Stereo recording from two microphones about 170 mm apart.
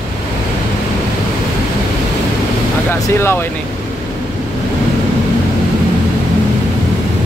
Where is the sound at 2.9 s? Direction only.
15° left (ahead or behind).